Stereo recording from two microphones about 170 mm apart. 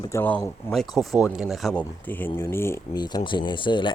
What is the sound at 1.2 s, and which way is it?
Speech, 5° right (ahead or behind).